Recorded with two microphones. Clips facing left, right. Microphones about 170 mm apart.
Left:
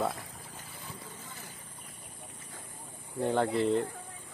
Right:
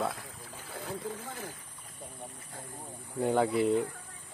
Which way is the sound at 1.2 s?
55° right (ahead or behind).